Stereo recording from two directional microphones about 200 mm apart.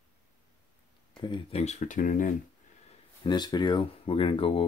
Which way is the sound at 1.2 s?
25° left (ahead or behind).